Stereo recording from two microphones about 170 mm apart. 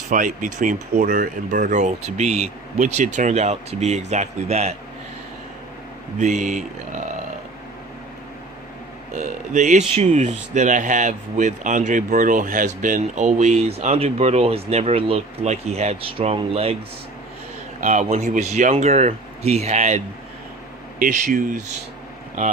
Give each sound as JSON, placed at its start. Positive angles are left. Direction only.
{"t": 0.1, "sound": "speech", "side_deg": -50}
{"t": 6.1, "sound": "speech", "side_deg": -45}
{"t": 9.1, "sound": "speech", "side_deg": -45}
{"t": 17.7, "sound": "speech", "side_deg": -45}
{"t": 21.0, "sound": "speech", "side_deg": -50}